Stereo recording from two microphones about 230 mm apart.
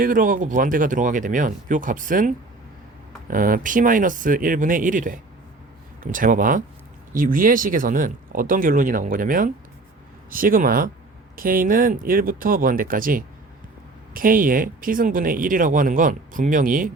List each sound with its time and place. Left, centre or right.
0.0 s speech: right